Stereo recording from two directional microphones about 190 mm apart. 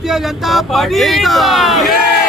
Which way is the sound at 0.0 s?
Centre (ahead or behind).